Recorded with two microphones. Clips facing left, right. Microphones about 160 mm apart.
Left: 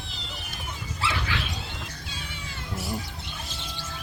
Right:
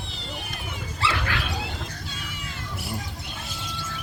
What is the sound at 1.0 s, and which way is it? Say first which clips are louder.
Dog: right 3 dB; 75° right (ahead or behind).